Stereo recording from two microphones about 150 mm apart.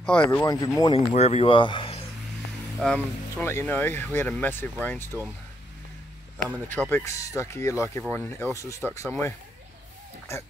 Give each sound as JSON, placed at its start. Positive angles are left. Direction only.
{"t": 0.0, "sound": "speech", "side_deg": 5}
{"t": 0.3, "sound": "speech", "side_deg": 20}
{"t": 0.9, "sound": "speech", "side_deg": 45}
{"t": 2.8, "sound": "speech", "side_deg": 5}
{"t": 6.9, "sound": "speech", "side_deg": 20}